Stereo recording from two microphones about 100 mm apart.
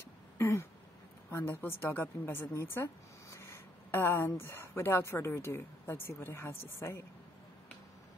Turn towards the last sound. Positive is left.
turn(degrees=25)  # may be behind; listen again after turning